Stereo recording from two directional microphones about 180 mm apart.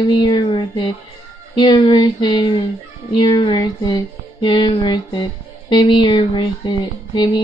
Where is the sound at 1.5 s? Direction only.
25° left (ahead or behind).